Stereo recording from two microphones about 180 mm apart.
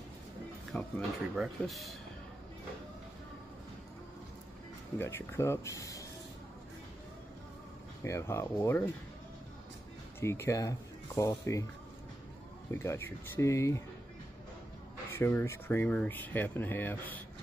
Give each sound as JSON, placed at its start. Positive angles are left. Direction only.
{"t": 0.7, "sound": "speech", "side_deg": 0}
{"t": 4.9, "sound": "speech", "side_deg": 15}
{"t": 8.0, "sound": "speech", "side_deg": 15}
{"t": 10.2, "sound": "speech", "side_deg": 15}
{"t": 12.7, "sound": "speech", "side_deg": 15}
{"t": 15.1, "sound": "speech", "side_deg": 15}